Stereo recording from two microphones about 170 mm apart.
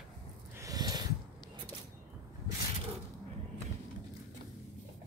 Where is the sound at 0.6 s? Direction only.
20° right (ahead or behind).